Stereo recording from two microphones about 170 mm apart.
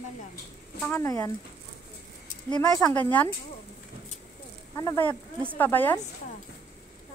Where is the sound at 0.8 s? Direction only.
15° left (ahead or behind).